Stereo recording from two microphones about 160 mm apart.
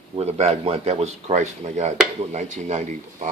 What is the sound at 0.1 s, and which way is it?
A man's voice, 40° right (ahead or behind).